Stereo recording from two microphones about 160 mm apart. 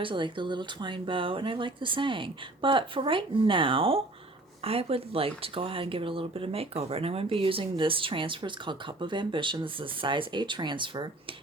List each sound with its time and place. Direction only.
0.0 s speech: 30° right (ahead or behind)